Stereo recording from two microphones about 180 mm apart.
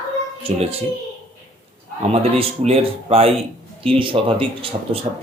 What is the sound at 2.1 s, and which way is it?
Speech, 35° right (ahead or behind).